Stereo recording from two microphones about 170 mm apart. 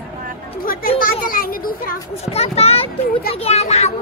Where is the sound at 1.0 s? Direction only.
55° left (ahead or behind).